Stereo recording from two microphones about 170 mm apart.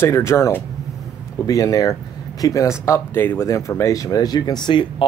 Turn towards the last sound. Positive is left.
turn(degrees=25)  # may be behind; listen again after turning